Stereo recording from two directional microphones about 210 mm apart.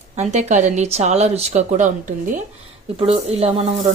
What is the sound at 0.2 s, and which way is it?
Speech, 35° right (ahead or behind).